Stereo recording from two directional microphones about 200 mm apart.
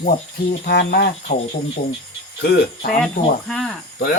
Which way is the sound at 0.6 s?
50° left (ahead or behind).